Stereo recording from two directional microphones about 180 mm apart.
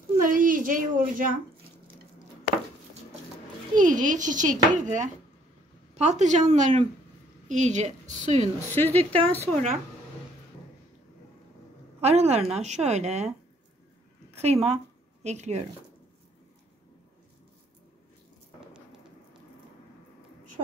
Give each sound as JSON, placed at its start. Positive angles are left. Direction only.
{"t": 0.3, "sound": "a sound", "side_deg": -50}
{"t": 3.7, "sound": "a child's voice", "side_deg": -45}
{"t": 8.7, "sound": "speech", "side_deg": 10}
{"t": 9.4, "sound": "a woman's voice", "side_deg": -40}
{"t": 12.0, "sound": "a woman's voice", "side_deg": -35}
{"t": 14.3, "sound": "a woman's voice", "side_deg": -35}